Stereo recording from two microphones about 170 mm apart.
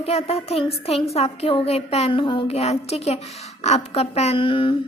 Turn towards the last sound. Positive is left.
turn(degrees=30)  # may be behind; listen again after turning